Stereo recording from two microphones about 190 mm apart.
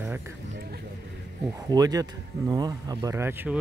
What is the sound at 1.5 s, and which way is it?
Speech, 20° right (ahead or behind).